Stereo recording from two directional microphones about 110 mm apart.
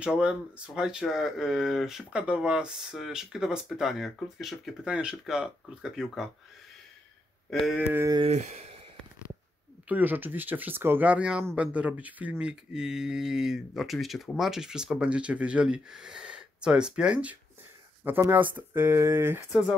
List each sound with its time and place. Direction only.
0.0 s speech: 10° right (ahead or behind)
7.6 s speech: centre (ahead or behind)
8.3 s speech: 90° right
9.8 s speech: 15° right (ahead or behind)